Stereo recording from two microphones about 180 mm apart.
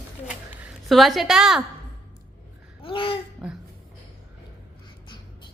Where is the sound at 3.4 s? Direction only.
Centre (ahead or behind).